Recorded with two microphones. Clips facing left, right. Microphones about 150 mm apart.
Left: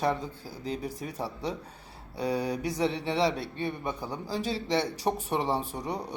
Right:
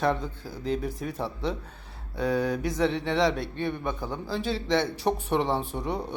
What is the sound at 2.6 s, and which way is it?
A man's voice, 5° left (ahead or behind).